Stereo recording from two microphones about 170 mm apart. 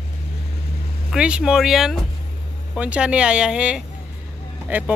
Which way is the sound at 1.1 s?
5° right (ahead or behind).